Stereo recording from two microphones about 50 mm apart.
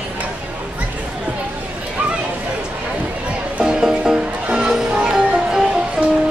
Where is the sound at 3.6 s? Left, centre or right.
Centre.